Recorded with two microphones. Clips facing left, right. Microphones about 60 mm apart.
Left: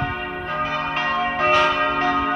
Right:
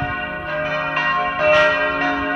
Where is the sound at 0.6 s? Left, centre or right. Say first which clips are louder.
Right 2 dB; centre.